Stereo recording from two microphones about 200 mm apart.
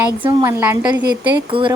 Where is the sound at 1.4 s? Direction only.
25° right (ahead or behind).